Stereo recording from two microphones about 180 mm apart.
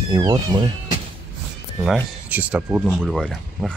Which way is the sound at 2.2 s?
10° right (ahead or behind).